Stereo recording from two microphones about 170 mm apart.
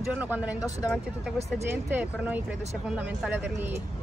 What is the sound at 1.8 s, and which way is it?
A woman's voice, 10° right (ahead or behind).